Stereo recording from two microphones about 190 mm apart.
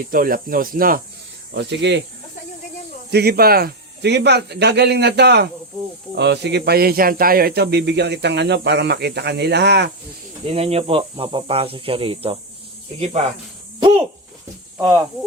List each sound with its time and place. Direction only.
0.1 s speech: 50° right (ahead or behind)
1.5 s speech: 65° right (ahead or behind)
3.1 s speech: 60° right (ahead or behind)
10.4 s speech: 30° right (ahead or behind)
13.7 s a sound: 25° right (ahead or behind)